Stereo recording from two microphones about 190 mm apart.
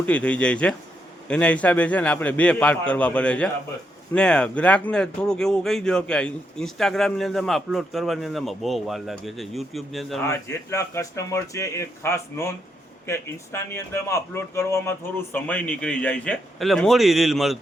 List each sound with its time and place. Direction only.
0.0 s a man's voice: 5° left (ahead or behind)
10.2 s a man's voice: 15° left (ahead or behind); by 17.6 s centre (ahead or behind)